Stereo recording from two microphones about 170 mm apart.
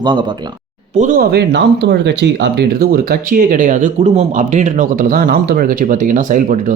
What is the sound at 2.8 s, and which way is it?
Speech, 60° right (ahead or behind).